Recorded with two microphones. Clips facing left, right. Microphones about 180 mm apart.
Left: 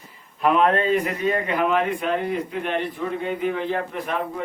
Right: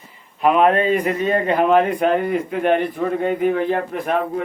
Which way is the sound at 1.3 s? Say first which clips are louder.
Right 6 dB; 35° right (ahead or behind).